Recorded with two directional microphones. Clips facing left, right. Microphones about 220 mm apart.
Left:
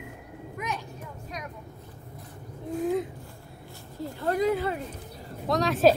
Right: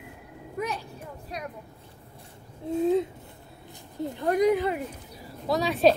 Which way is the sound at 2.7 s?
25° right (ahead or behind).